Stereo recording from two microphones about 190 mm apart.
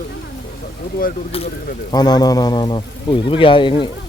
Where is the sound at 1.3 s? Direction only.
30° left (ahead or behind).